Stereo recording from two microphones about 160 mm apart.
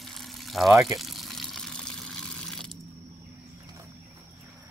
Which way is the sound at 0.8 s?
Centre (ahead or behind).